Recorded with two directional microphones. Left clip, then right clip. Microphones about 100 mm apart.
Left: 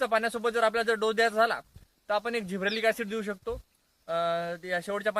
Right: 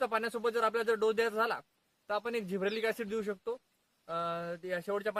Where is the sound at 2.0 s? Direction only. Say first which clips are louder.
Left 5 dB; 45° right (ahead or behind).